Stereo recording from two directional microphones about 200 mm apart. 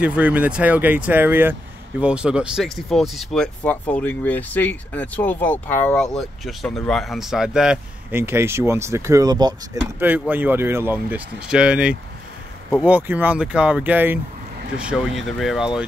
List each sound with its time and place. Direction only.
0.0 s speech: 5° right (ahead or behind)
9.9 s speech: 10° right (ahead or behind)